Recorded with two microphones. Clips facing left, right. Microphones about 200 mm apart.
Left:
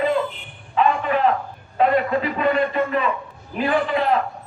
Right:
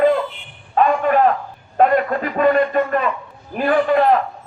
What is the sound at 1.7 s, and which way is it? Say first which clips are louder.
A man's voice: right 3 dB; 50° right (ahead or behind).